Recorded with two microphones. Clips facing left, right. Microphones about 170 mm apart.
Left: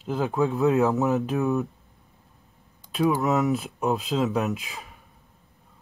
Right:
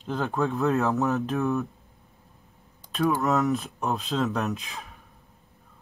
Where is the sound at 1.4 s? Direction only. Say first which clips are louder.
Left 2 dB; 15° left (ahead or behind).